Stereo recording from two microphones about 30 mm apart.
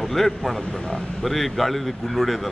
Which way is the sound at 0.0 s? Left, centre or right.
Centre.